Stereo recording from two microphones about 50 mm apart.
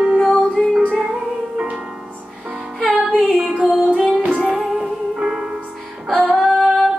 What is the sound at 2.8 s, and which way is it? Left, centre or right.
Music, left.